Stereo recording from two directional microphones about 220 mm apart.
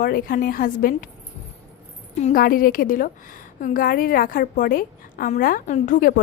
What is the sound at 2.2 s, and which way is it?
Speech, 35° left (ahead or behind).